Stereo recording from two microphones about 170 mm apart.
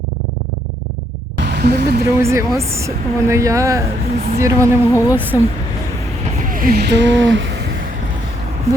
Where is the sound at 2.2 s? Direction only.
15° right (ahead or behind).